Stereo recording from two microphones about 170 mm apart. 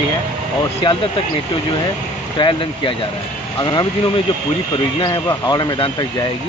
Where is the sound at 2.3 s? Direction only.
30° left (ahead or behind).